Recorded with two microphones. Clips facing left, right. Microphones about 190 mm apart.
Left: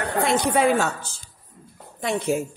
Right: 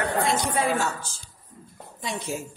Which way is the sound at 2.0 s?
55° left (ahead or behind).